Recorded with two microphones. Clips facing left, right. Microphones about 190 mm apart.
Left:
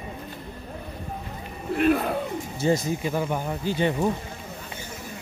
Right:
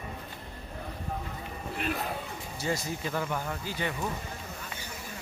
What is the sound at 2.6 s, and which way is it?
Speech, 20° left (ahead or behind).